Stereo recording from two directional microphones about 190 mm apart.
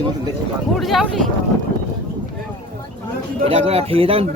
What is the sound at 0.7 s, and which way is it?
Speech, centre (ahead or behind).